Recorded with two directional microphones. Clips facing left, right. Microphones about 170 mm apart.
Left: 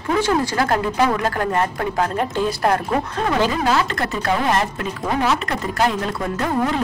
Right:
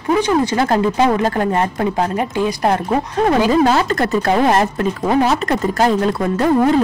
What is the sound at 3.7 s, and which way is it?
Speech, 40° right (ahead or behind).